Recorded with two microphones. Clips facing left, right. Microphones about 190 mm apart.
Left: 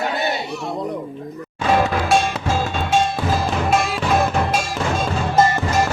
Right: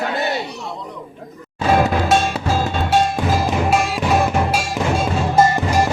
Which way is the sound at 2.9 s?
15° right (ahead or behind).